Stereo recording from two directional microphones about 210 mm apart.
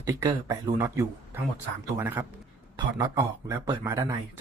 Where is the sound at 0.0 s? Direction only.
15° right (ahead or behind).